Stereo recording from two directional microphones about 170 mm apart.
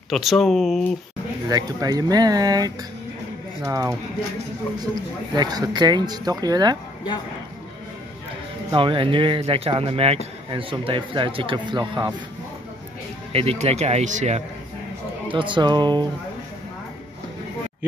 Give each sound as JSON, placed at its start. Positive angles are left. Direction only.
{"t": 0.1, "sound": "speech", "side_deg": 0}
{"t": 1.5, "sound": "speech", "side_deg": -20}
{"t": 5.3, "sound": "speech", "side_deg": -25}
{"t": 8.7, "sound": "speech", "side_deg": -30}
{"t": 13.3, "sound": "speech", "side_deg": -35}
{"t": 15.2, "sound": "speech", "side_deg": -30}